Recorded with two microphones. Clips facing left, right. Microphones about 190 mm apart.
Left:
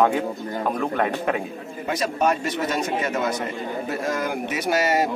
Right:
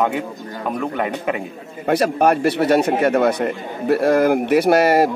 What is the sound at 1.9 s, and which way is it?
A man's voice, 60° right (ahead or behind).